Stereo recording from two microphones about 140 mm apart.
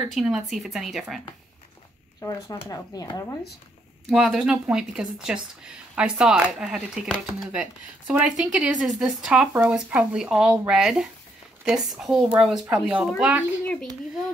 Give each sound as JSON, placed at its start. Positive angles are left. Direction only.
{"t": 0.1, "sound": "speech", "side_deg": 0}
{"t": 2.7, "sound": "speech", "side_deg": 25}
{"t": 4.1, "sound": "speech", "side_deg": -5}
{"t": 9.5, "sound": "speech", "side_deg": -15}